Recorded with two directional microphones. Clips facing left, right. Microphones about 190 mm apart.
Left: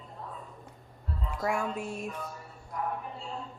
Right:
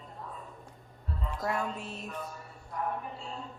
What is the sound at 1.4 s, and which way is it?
Speech, 10° left (ahead or behind).